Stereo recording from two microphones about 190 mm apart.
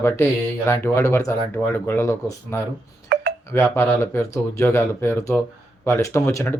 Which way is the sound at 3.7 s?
15° left (ahead or behind).